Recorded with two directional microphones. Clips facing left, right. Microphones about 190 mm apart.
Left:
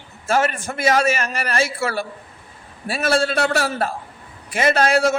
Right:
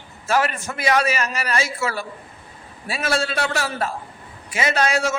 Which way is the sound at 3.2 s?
50° left (ahead or behind).